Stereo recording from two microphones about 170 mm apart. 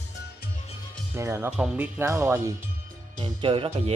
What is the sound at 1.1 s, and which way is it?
Speech, 15° right (ahead or behind).